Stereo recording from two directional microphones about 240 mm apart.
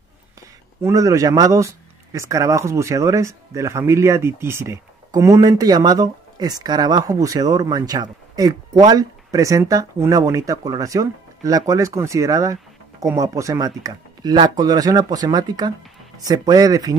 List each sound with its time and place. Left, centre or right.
0.8 s speech: centre